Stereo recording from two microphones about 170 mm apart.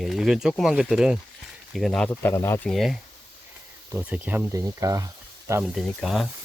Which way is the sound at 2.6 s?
Centre (ahead or behind).